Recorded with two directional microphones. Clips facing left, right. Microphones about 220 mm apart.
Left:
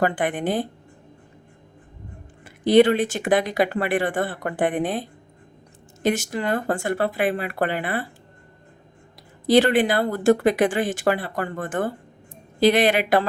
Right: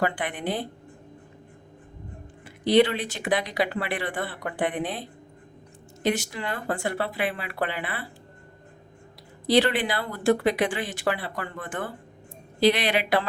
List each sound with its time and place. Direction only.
0.0 s speech: 45° left (ahead or behind)
2.4 s speech: 45° left (ahead or behind)
9.5 s speech: 45° left (ahead or behind)